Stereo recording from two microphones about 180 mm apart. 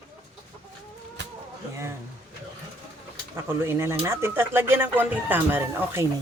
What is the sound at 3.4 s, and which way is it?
Speech, 15° right (ahead or behind).